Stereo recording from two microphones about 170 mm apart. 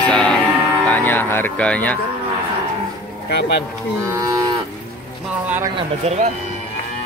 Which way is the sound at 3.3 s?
80° left.